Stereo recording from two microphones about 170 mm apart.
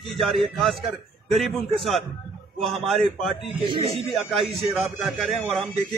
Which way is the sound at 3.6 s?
30° right (ahead or behind).